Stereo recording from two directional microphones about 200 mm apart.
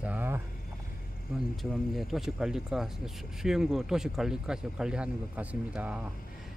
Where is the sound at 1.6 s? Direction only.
Centre (ahead or behind).